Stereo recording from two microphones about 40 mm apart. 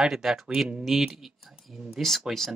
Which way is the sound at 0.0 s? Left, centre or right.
Centre.